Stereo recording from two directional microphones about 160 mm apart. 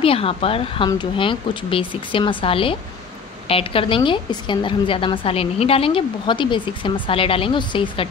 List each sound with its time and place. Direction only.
0.0 s a woman's voice: 35° left (ahead or behind)